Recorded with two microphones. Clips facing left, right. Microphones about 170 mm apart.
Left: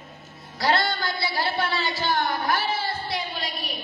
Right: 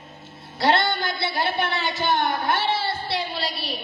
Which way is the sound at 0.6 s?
25° right (ahead or behind).